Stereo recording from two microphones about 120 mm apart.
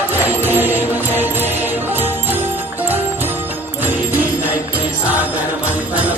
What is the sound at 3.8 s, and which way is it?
Music, 15° right (ahead or behind).